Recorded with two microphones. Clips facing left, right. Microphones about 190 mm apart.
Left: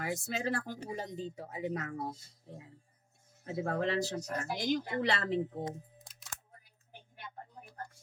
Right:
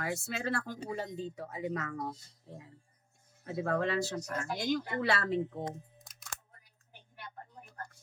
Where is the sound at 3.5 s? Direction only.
25° left (ahead or behind).